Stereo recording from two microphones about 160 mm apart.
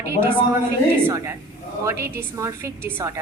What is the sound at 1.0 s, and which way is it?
A woman's voice, 15° right (ahead or behind).